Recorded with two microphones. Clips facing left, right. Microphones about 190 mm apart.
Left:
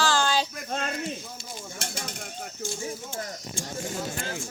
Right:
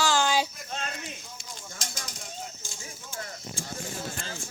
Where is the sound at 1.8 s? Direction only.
60° left (ahead or behind).